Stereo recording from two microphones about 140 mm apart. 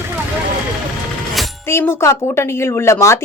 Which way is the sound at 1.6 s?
15° left (ahead or behind).